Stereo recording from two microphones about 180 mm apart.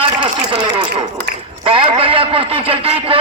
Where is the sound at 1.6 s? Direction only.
30° right (ahead or behind).